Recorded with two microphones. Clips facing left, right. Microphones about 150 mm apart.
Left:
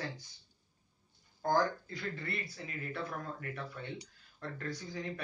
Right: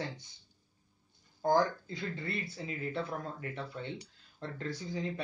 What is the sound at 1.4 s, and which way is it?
Speech, 20° right (ahead or behind).